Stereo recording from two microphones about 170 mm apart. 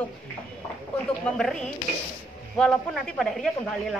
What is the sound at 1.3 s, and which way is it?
Speech, 5° left (ahead or behind).